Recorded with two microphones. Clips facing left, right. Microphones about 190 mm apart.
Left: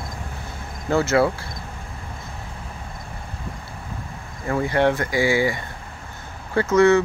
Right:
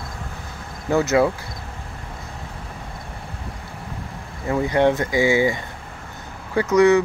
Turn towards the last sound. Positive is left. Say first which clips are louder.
# right 1 dB
turn(degrees=-15)  # may be behind; listen again after turning